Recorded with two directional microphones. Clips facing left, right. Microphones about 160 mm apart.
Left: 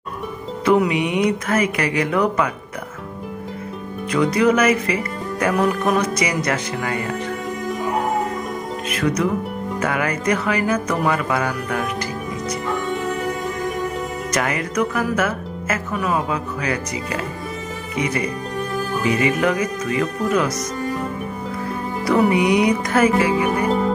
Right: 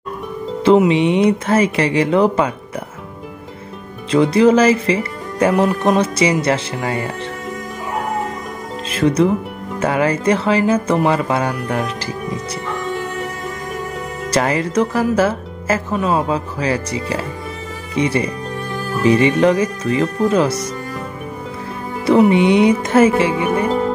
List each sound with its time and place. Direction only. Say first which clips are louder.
0.7 s speech: right 5 dB; 25° right (ahead or behind)
4.1 s speech: right 5 dB; 30° right (ahead or behind)
8.8 s speech: right 6 dB; 30° right (ahead or behind)
14.3 s speech: right 6 dB; 30° right (ahead or behind)
22.0 s speech: right 5 dB; 20° right (ahead or behind)